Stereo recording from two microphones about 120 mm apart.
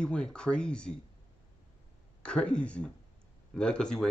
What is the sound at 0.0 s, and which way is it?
Speech, 10° left (ahead or behind).